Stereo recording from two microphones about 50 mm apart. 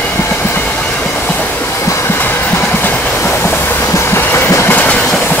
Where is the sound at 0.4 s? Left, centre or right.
Left.